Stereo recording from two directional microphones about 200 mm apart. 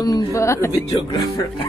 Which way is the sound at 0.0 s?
20° left (ahead or behind).